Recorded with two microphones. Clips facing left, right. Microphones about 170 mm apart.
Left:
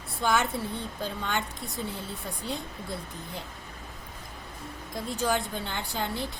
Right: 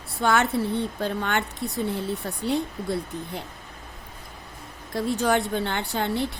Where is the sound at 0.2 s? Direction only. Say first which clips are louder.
Right 5 dB; 65° right (ahead or behind).